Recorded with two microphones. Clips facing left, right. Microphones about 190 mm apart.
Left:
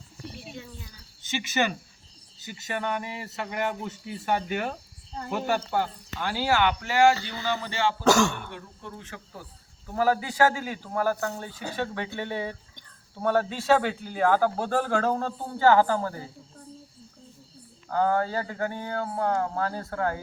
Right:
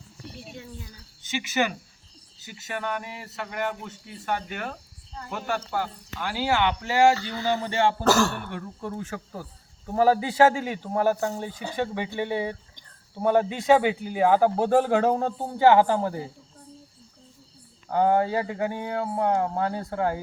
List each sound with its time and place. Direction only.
1.2 s speech: 10° right (ahead or behind); by 7.2 s 30° right (ahead or behind)
7.3 s speech: 40° right (ahead or behind)
8.0 s speech: 5° right (ahead or behind)
8.5 s speech: 45° right (ahead or behind); by 16.2 s 15° right (ahead or behind)
17.8 s speech: 20° right (ahead or behind)